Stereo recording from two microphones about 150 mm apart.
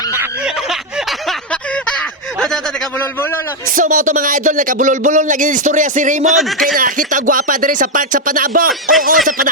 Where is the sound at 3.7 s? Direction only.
60° right (ahead or behind).